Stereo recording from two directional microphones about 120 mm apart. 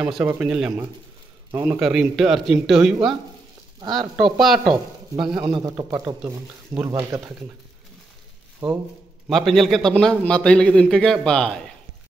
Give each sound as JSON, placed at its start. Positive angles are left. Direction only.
{"t": 0.0, "sound": "a man's voice", "side_deg": -10}
{"t": 3.8, "sound": "speech", "side_deg": -40}
{"t": 4.2, "sound": "speech", "side_deg": 0}
{"t": 5.6, "sound": "speech", "side_deg": -30}
{"t": 8.6, "sound": "speech", "side_deg": -40}
{"t": 9.3, "sound": "a man's voice", "side_deg": 0}